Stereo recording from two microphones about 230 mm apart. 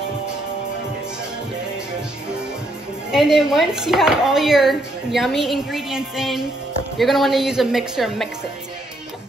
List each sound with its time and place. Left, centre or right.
3.1 s speech: centre